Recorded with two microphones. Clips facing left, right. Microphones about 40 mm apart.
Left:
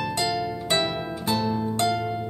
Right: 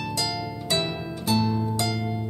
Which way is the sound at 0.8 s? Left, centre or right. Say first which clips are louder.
Left 2 dB; left.